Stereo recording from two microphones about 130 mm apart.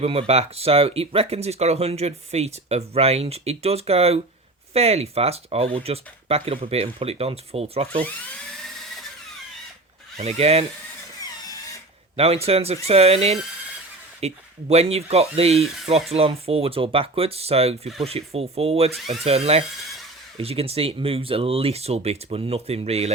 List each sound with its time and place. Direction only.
0.0 s speech: 50° right (ahead or behind)
10.2 s speech: 55° right (ahead or behind)
12.1 s speech: 50° right (ahead or behind)